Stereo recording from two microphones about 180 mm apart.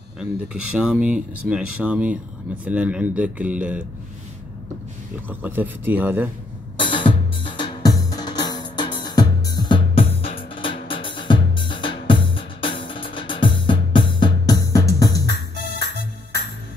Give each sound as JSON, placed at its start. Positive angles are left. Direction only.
{"t": 0.2, "sound": "speech", "side_deg": -5}
{"t": 5.3, "sound": "speech", "side_deg": -10}
{"t": 6.8, "sound": "drum", "side_deg": 25}
{"t": 10.5, "sound": "music", "side_deg": 30}